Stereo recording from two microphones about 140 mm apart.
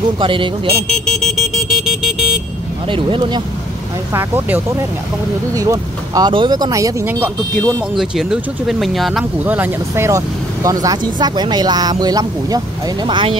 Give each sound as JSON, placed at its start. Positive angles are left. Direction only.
{"t": 0.2, "sound": "speech", "side_deg": -35}
{"t": 1.0, "sound": "vehicle", "side_deg": 5}
{"t": 2.9, "sound": "speech", "side_deg": -35}
{"t": 4.1, "sound": "speech", "side_deg": -15}
{"t": 5.5, "sound": "speech", "side_deg": -25}
{"t": 7.9, "sound": "speech", "side_deg": 0}
{"t": 9.4, "sound": "speech", "side_deg": -15}